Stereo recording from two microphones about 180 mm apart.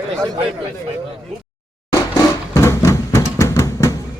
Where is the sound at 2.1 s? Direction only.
15° left (ahead or behind).